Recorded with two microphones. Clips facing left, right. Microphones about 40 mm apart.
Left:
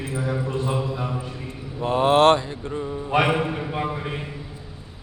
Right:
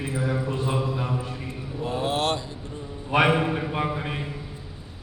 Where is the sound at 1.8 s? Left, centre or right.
Left.